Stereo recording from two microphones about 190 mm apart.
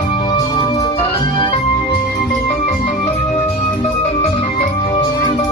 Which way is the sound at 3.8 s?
30° left (ahead or behind).